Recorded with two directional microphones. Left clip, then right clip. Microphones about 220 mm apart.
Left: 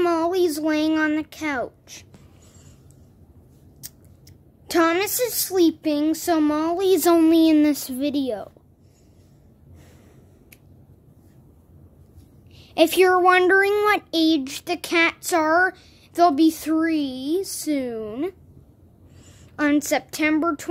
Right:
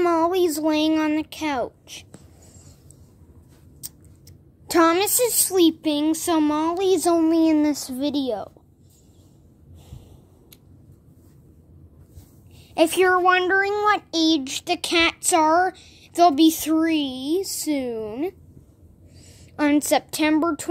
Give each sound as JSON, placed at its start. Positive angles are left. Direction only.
{"t": 0.0, "sound": "speech", "side_deg": 0}
{"t": 3.8, "sound": "a sound", "side_deg": 0}
{"t": 4.6, "sound": "speech", "side_deg": -5}
{"t": 7.0, "sound": "speech", "side_deg": 20}
{"t": 7.8, "sound": "speech", "side_deg": 0}
{"t": 12.5, "sound": "a sound", "side_deg": 5}
{"t": 12.9, "sound": "speech", "side_deg": 20}
{"t": 13.4, "sound": "speech", "side_deg": 30}
{"t": 19.5, "sound": "a woman's voice", "side_deg": -10}